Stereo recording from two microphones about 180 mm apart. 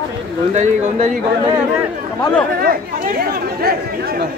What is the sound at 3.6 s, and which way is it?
Speech, 60° right (ahead or behind).